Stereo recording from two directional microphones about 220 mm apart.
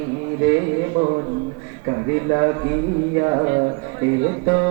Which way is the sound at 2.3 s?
20° right (ahead or behind).